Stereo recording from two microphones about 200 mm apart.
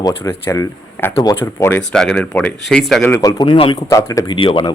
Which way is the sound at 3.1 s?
15° left (ahead or behind).